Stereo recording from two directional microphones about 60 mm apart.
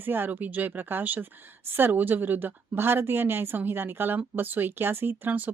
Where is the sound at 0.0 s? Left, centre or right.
Right.